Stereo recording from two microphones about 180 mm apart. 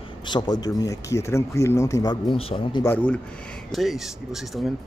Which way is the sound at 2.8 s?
10° left (ahead or behind).